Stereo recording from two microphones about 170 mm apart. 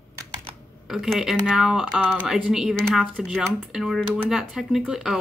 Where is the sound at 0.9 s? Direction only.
Centre (ahead or behind).